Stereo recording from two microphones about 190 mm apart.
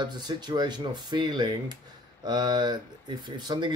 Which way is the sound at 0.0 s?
20° right (ahead or behind).